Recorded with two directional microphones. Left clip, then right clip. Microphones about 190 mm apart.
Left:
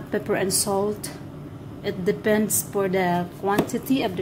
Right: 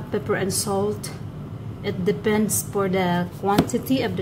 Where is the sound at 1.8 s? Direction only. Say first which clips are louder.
Even; 10° left (ahead or behind).